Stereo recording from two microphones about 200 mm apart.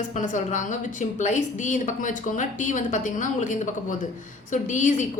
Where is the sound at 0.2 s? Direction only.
40° left (ahead or behind).